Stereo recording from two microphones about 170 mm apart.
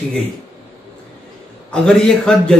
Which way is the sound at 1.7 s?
5° left (ahead or behind).